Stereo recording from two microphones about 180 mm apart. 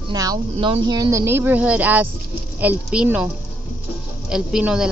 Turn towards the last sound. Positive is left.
turn(degrees=-5)  # may be behind; listen again after turning